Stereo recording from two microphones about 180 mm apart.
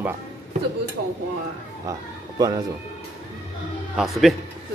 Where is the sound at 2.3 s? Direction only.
20° right (ahead or behind).